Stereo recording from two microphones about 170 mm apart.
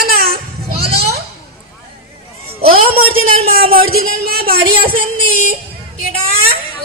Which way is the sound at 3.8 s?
65° right (ahead or behind).